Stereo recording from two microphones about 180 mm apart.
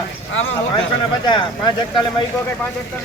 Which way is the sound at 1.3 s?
25° left (ahead or behind).